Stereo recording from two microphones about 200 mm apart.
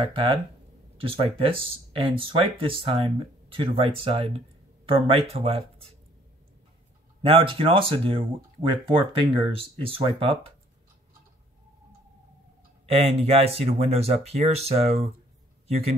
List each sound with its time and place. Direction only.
0.0 s speech: 25° right (ahead or behind)
7.2 s speech: 25° right (ahead or behind)
12.8 s speech: 30° right (ahead or behind)